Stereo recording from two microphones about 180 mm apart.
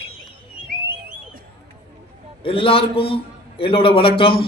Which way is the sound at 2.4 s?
30° left (ahead or behind).